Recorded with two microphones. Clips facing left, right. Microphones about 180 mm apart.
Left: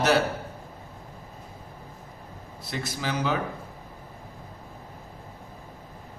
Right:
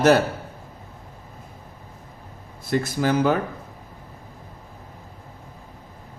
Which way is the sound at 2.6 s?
50° right (ahead or behind).